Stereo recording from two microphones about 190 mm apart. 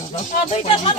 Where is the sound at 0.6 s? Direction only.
25° left (ahead or behind).